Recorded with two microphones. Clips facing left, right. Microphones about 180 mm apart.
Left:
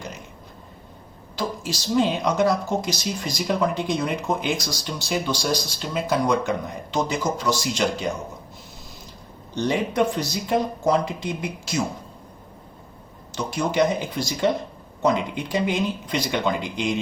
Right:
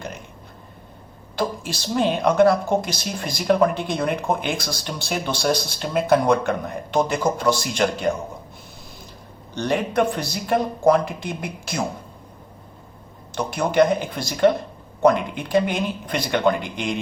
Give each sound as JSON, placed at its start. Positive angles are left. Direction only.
{"t": 1.4, "sound": "speech", "side_deg": -55}
{"t": 9.6, "sound": "speech", "side_deg": -55}
{"t": 13.3, "sound": "speech", "side_deg": -55}